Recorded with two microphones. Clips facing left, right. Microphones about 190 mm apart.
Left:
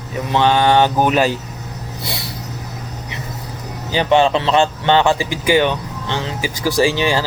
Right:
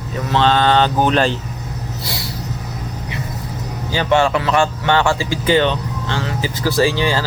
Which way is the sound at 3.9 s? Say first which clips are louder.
Left 2 dB; 20° left (ahead or behind).